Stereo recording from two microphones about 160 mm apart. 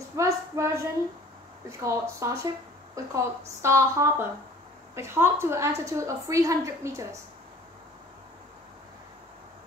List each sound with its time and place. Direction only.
0.1 s a woman's voice: 20° right (ahead or behind)